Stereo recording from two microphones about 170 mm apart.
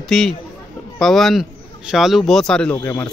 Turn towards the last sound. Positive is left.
turn(degrees=15)  # may be behind; listen again after turning